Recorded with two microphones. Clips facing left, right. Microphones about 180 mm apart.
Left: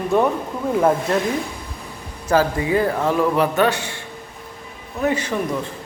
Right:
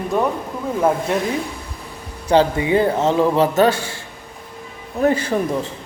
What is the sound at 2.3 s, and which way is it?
A man's voice, 20° right (ahead or behind).